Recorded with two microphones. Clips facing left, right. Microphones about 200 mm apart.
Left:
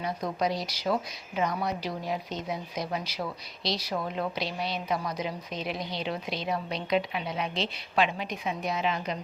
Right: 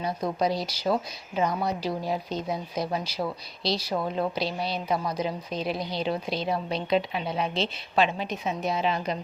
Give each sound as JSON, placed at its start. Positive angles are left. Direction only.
{"t": 0.0, "sound": "a woman's voice", "side_deg": -30}